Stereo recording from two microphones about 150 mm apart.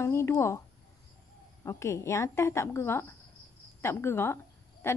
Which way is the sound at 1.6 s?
20° left (ahead or behind).